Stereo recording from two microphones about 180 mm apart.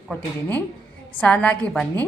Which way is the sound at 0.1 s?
10° left (ahead or behind).